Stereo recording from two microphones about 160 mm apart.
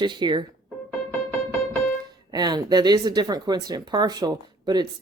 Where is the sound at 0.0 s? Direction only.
30° right (ahead or behind).